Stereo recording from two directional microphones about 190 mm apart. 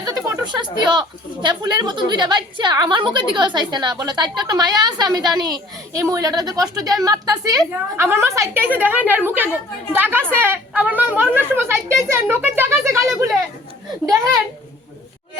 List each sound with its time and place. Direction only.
0.0 s a child's voice: 20° right (ahead or behind)